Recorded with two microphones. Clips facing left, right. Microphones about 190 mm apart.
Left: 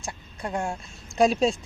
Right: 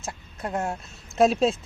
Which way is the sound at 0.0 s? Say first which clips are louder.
Right 1 dB; 5° right (ahead or behind).